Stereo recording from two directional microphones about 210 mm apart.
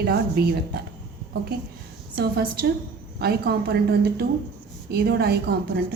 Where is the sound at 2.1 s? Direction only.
45° right (ahead or behind).